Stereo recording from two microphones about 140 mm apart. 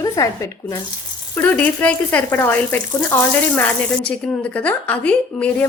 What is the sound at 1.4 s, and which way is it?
Speech, 10° left (ahead or behind).